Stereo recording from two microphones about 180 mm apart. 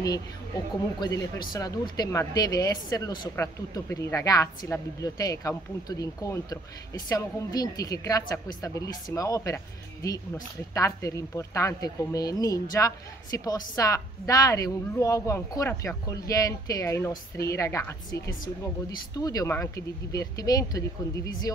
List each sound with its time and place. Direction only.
0.9 s speech: 25° left (ahead or behind)